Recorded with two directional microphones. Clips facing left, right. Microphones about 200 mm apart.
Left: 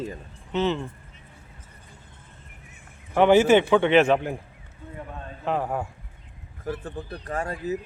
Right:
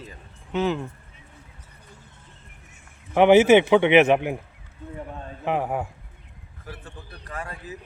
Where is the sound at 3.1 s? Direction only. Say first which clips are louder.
Right 2 dB; 15° right (ahead or behind).